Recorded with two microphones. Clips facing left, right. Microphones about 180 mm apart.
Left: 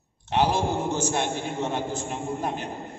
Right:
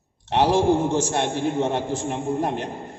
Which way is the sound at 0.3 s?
90° right.